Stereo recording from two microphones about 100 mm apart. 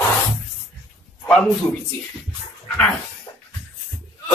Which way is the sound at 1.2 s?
10° left (ahead or behind).